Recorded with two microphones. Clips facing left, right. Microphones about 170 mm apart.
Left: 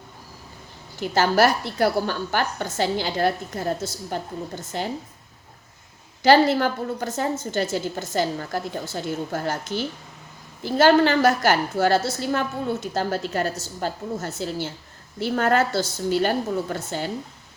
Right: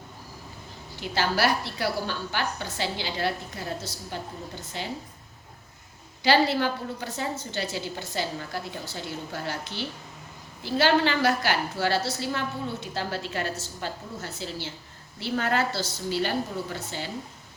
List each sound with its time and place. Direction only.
1.1 s a woman's voice: 45° left (ahead or behind)
6.2 s a woman's voice: 45° left (ahead or behind)